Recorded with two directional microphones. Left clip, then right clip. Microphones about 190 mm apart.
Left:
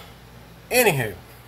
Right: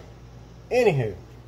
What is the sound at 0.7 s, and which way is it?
Speech, 5° left (ahead or behind).